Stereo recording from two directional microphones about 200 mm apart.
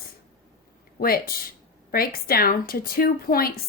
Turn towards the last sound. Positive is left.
turn(degrees=50)  # may be behind; listen again after turning